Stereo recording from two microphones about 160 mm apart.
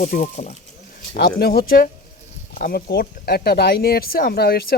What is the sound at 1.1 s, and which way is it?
Speech, 80° left.